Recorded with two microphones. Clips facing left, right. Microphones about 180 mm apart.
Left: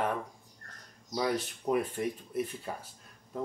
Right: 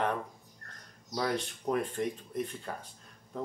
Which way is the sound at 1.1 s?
5° left (ahead or behind).